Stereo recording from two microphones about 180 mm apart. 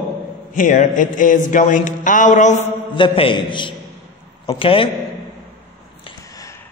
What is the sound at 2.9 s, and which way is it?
A man's voice, 30° left (ahead or behind).